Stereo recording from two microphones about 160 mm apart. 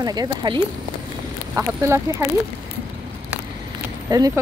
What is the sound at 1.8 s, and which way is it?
Speech, 15° right (ahead or behind).